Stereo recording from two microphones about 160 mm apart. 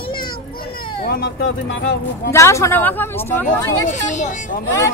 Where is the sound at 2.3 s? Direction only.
15° left (ahead or behind).